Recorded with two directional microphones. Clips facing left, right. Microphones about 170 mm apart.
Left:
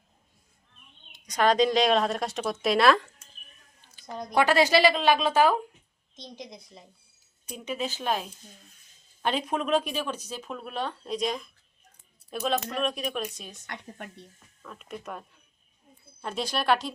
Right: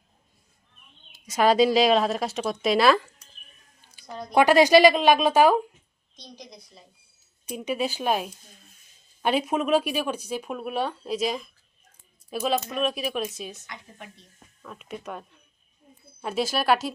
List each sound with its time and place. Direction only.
1.1 s speech: 5° right (ahead or behind)
4.4 s speech: 15° right (ahead or behind)
6.1 s a woman's voice: 20° left (ahead or behind)
7.5 s speech: 10° right (ahead or behind)
13.7 s a woman's voice: 65° left (ahead or behind)
14.6 s speech: 5° right (ahead or behind)